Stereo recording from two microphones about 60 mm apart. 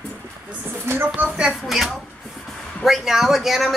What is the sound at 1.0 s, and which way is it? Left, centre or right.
Speech, right.